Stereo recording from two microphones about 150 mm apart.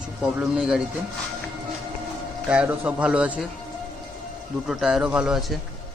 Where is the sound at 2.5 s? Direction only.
10° right (ahead or behind).